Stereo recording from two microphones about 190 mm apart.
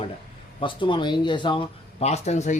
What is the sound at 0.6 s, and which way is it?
Speech, 25° left (ahead or behind).